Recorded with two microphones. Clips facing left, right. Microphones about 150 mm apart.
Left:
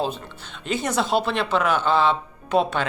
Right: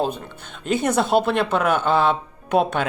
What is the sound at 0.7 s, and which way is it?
Speech, 55° right (ahead or behind).